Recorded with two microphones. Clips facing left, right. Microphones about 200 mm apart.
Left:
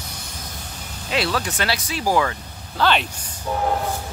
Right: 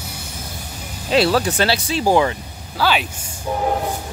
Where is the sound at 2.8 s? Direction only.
5° right (ahead or behind).